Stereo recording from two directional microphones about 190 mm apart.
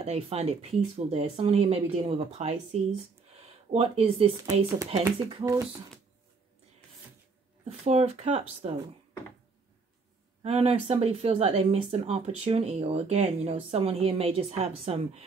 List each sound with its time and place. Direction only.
0.0 s speech: 35° right (ahead or behind)
5.3 s speech: 20° right (ahead or behind)
7.8 s speech: 35° right (ahead or behind)
10.4 s speech: 35° right (ahead or behind)